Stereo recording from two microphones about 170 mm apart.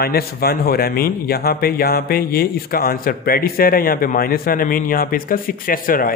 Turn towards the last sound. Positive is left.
turn(degrees=55)  # may be behind; listen again after turning